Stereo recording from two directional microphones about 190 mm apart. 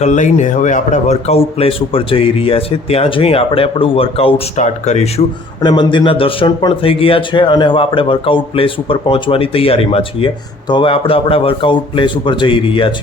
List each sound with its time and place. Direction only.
0.0 s speech: 40° left (ahead or behind)
5.6 s speech: 25° left (ahead or behind)